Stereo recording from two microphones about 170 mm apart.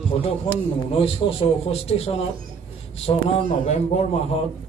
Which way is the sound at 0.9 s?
35° left (ahead or behind).